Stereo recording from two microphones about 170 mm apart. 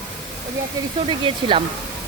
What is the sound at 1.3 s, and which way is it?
Speech, 30° right (ahead or behind).